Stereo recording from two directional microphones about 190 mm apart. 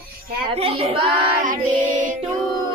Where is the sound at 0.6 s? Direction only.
30° right (ahead or behind).